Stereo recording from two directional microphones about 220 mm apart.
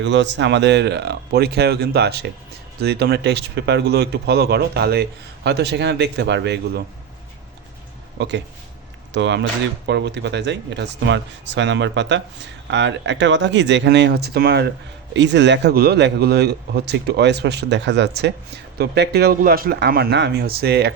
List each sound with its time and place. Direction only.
0.0 s a man's voice: 55° right (ahead or behind)
9.1 s a man's voice: 50° right (ahead or behind)